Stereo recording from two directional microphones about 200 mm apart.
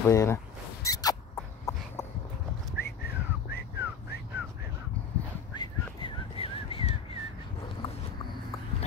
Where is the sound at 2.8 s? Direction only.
55° left (ahead or behind).